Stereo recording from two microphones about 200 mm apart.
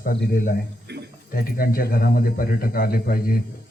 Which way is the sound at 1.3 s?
45° left (ahead or behind).